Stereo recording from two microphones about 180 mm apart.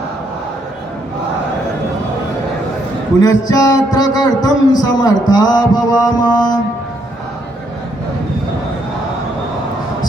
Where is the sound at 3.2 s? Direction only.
20° left (ahead or behind).